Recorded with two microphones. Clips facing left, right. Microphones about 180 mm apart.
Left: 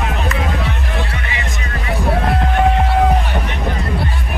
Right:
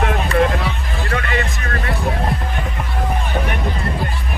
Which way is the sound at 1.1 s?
60° right (ahead or behind).